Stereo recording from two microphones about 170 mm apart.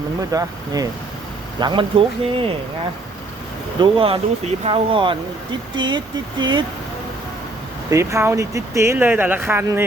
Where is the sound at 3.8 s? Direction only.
30° right (ahead or behind).